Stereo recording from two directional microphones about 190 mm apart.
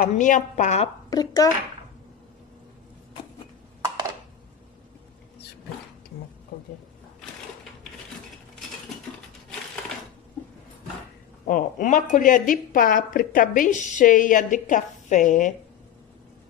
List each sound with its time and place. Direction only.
0.0 s a woman's voice: 40° left (ahead or behind)
1.1 s a child's voice: 20° left (ahead or behind)
11.4 s a woman's voice: 45° left (ahead or behind)